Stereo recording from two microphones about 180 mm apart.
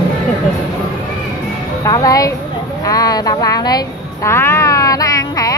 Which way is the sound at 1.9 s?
20° left (ahead or behind).